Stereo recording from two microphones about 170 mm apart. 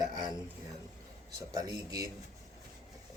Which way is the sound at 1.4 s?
20° right (ahead or behind).